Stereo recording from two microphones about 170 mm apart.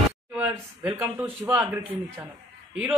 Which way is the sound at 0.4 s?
5° right (ahead or behind).